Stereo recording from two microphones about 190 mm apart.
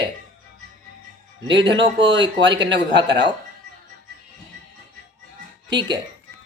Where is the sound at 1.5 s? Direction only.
25° right (ahead or behind).